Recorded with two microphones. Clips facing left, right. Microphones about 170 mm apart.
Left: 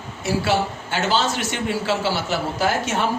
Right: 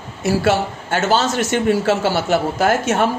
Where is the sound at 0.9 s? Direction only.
50° right (ahead or behind).